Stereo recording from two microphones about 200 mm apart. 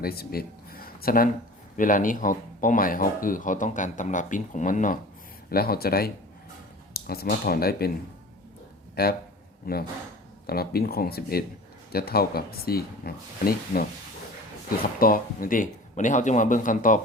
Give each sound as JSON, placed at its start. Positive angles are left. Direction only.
{"t": 0.0, "sound": "speech", "side_deg": 50}
{"t": 9.0, "sound": "speech", "side_deg": 50}
{"t": 14.9, "sound": "speech", "side_deg": 45}